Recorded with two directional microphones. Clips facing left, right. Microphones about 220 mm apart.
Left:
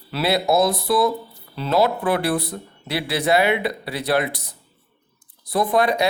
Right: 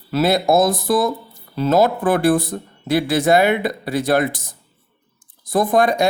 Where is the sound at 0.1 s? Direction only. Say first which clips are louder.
Right 4 dB; 45° right (ahead or behind).